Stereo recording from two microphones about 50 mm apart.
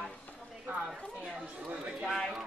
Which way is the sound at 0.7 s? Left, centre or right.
Right.